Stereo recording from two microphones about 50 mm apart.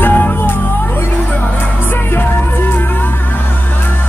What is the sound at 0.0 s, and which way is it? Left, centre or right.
Music, left.